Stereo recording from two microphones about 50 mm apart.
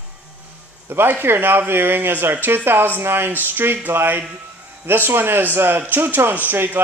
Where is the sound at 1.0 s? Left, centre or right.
Right.